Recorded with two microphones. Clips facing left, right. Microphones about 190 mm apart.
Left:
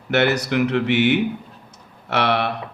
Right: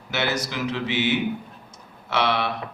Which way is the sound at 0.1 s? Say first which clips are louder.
Left 8 dB; 60° left (ahead or behind).